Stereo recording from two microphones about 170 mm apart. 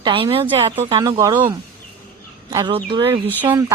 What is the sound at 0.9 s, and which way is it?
Speech, 20° right (ahead or behind).